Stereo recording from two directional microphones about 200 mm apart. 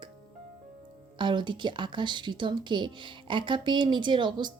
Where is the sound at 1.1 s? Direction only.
25° right (ahead or behind).